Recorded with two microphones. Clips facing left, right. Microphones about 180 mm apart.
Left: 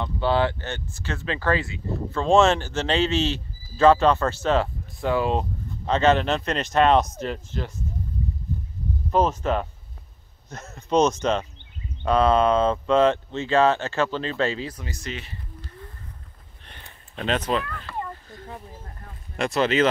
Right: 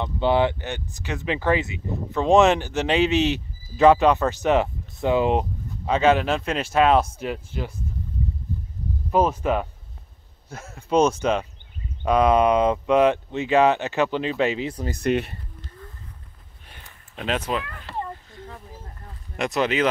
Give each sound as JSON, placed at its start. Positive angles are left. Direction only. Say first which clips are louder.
{"t": 0.0, "sound": "speech", "louder": "right 2 dB", "side_deg": -20}
{"t": 9.1, "sound": "speech", "louder": "right 1 dB", "side_deg": -10}
{"t": 14.9, "sound": "speech", "louder": "right 12 dB", "side_deg": -60}
{"t": 16.6, "sound": "a sound", "louder": "left 1 dB", "side_deg": -5}
{"t": 17.8, "sound": "a sound", "louder": "right 1 dB", "side_deg": -30}
{"t": 19.3, "sound": "speech", "louder": "left 1 dB", "side_deg": -15}